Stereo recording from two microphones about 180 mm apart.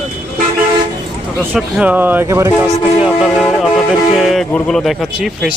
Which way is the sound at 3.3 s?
Centre (ahead or behind).